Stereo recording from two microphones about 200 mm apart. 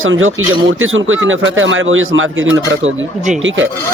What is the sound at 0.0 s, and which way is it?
Speech, 90° right.